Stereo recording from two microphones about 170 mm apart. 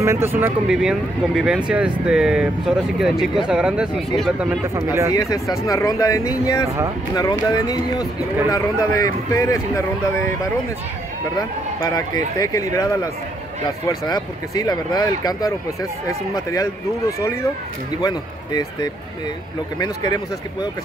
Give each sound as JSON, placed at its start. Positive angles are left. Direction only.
{"t": 0.0, "sound": "speech", "side_deg": -15}
{"t": 0.7, "sound": "speech", "side_deg": -5}
{"t": 4.7, "sound": "speech", "side_deg": -15}
{"t": 5.1, "sound": "speech", "side_deg": 20}
{"t": 11.8, "sound": "speech", "side_deg": 25}